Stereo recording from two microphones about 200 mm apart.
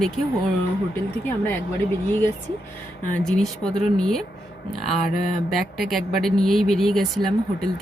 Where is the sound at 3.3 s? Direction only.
5° left (ahead or behind).